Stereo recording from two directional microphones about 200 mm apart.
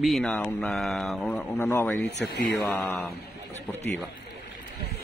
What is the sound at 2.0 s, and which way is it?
Speech, 55° left (ahead or behind).